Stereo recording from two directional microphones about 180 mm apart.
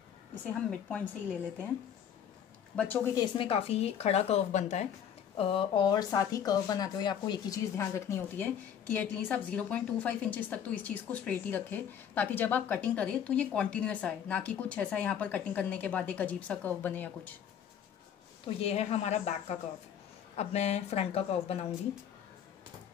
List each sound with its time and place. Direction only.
0.5 s a woman's voice: 5° left (ahead or behind)
2.7 s speech: 10° left (ahead or behind)
3.2 s speech: 30° left (ahead or behind)
5.4 s speech: 30° left (ahead or behind); by 17.3 s 10° left (ahead or behind)
18.6 s speech: 35° left (ahead or behind)